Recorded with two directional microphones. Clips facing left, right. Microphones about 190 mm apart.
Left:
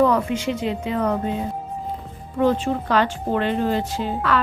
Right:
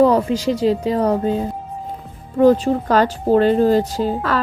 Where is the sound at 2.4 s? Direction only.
40° right (ahead or behind).